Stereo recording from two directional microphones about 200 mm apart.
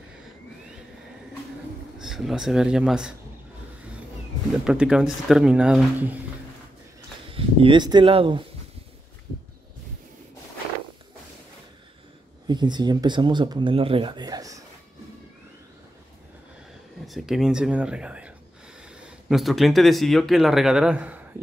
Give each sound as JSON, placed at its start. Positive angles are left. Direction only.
{"t": 2.0, "sound": "speech", "side_deg": 0}
{"t": 4.6, "sound": "speech", "side_deg": -5}
{"t": 7.3, "sound": "speech", "side_deg": -25}
{"t": 12.4, "sound": "speech", "side_deg": -20}
{"t": 17.0, "sound": "speech", "side_deg": 0}